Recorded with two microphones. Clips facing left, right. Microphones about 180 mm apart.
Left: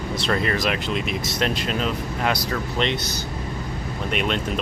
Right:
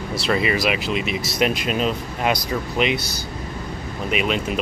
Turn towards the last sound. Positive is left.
turn(degrees=-5)  # may be behind; listen again after turning